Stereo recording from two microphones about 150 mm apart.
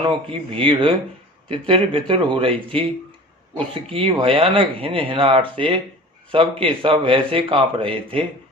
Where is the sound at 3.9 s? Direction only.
35° right (ahead or behind).